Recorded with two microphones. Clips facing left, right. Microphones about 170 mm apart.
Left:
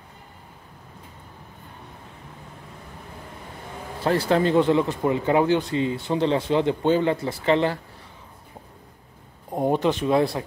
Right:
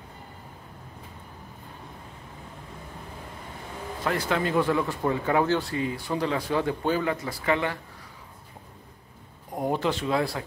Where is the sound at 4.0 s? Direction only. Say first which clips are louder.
Left 6 dB; 30° left (ahead or behind).